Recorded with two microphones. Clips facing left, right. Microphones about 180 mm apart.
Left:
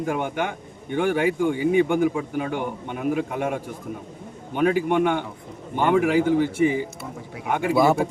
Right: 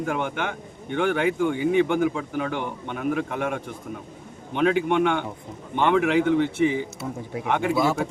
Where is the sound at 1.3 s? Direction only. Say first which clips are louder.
Left 1 dB; 55° right (ahead or behind).